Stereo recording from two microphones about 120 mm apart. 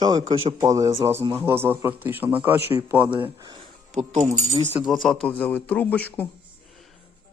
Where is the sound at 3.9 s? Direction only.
75° right (ahead or behind).